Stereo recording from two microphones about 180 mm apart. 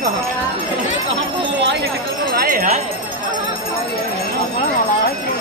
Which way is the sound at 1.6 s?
75° right (ahead or behind).